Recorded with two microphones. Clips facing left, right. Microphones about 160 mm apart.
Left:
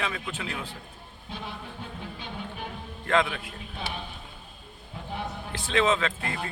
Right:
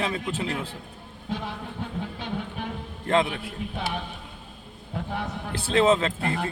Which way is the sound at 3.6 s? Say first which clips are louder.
Right 9 dB; 65° right (ahead or behind).